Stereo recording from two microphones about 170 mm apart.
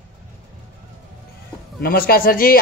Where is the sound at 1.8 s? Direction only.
60° left (ahead or behind).